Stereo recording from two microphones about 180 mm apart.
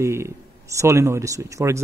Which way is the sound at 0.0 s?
15° right (ahead or behind).